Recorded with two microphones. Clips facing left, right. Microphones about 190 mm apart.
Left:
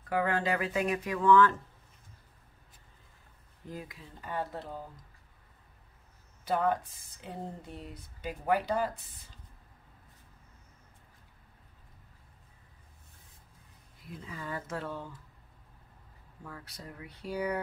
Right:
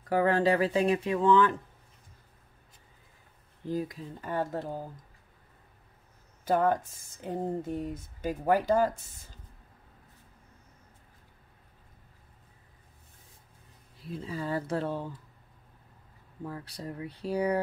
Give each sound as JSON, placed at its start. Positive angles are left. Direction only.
{"t": 0.1, "sound": "speech", "side_deg": -35}
{"t": 3.6, "sound": "speech", "side_deg": -35}
{"t": 6.4, "sound": "speech", "side_deg": -45}
{"t": 14.0, "sound": "speech", "side_deg": -30}
{"t": 16.4, "sound": "speech", "side_deg": -30}